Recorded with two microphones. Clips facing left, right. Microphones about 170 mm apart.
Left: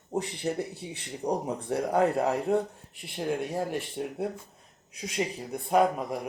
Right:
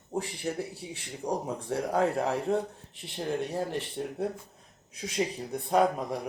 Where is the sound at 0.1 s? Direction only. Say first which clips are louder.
Left 2 dB; 20° left (ahead or behind).